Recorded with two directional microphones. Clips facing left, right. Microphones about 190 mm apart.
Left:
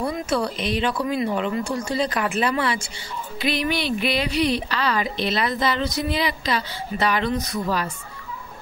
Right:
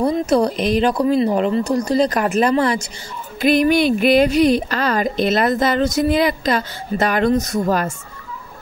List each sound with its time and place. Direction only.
0.0 s speech: 40° right (ahead or behind)